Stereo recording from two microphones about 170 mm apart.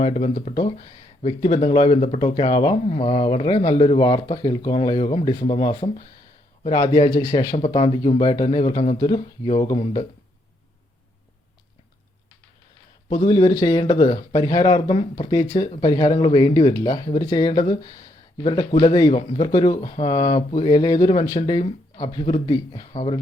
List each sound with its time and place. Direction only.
0.0 s speech: 40° left (ahead or behind)
0.5 s speech: 30° left (ahead or behind)
2.8 s speech: 40° left (ahead or behind)
13.1 s speech: 25° left (ahead or behind)
14.8 s speech: 35° left (ahead or behind)